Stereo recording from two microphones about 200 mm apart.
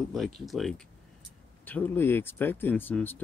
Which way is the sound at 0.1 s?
Centre (ahead or behind).